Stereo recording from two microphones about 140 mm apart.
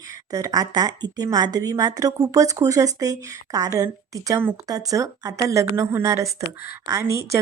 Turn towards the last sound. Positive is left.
turn(degrees=-20)  # may be behind; listen again after turning